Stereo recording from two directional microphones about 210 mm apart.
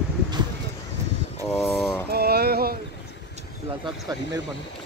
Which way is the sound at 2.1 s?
50° right (ahead or behind).